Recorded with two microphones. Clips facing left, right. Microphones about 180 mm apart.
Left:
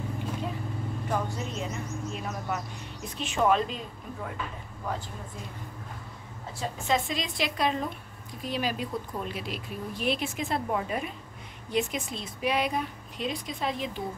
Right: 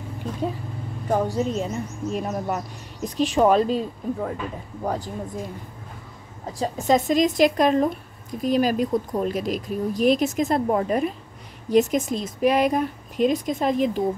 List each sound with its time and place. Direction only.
0.4 s speech: 40° right (ahead or behind)
6.6 s speech: 40° right (ahead or behind)